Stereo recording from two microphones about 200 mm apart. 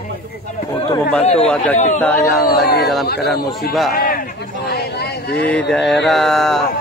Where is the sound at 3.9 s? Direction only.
45° left (ahead or behind).